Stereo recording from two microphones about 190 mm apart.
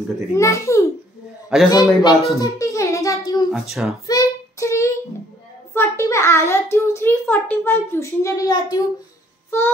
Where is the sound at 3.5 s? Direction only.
Centre (ahead or behind).